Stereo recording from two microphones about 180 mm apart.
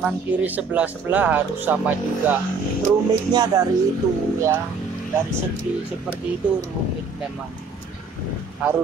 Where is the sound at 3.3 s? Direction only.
25° right (ahead or behind).